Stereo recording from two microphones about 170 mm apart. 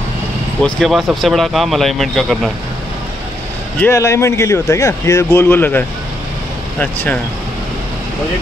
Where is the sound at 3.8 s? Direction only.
15° left (ahead or behind).